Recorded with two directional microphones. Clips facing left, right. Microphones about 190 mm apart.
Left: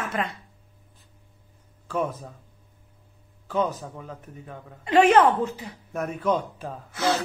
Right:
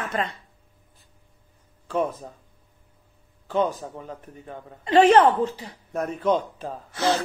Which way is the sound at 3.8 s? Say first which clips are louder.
Right 2 dB; 30° right (ahead or behind).